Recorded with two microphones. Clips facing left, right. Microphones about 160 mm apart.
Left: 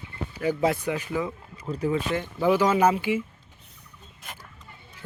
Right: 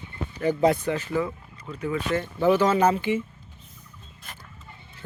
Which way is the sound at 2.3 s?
10° left (ahead or behind).